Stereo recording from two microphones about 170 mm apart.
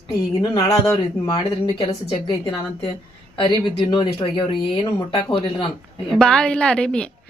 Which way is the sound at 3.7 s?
30° left (ahead or behind).